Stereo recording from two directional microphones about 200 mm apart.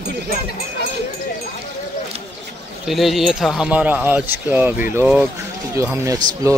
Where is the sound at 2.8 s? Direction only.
Centre (ahead or behind).